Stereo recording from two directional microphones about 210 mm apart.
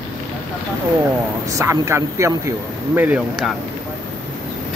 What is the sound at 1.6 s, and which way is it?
Speech, 15° right (ahead or behind).